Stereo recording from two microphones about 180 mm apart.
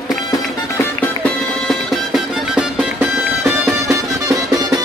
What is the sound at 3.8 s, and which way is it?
Music, 20° right (ahead or behind).